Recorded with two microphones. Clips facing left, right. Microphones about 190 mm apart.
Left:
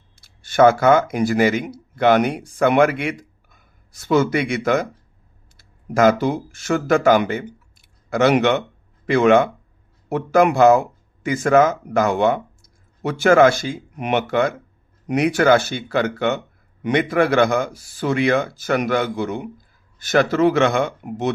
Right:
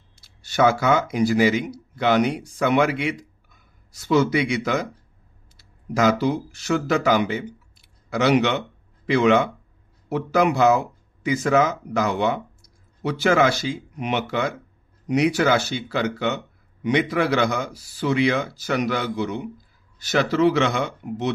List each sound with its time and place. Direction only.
0.2 s speech: 50° left (ahead or behind)